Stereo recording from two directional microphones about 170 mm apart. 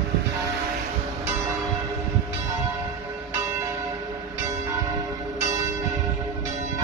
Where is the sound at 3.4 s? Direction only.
20° right (ahead or behind).